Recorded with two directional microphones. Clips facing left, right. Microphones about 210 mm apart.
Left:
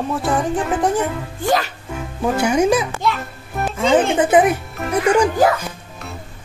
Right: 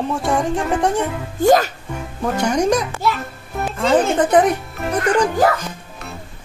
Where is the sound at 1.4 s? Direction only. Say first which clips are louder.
Right 6 dB; 45° right (ahead or behind).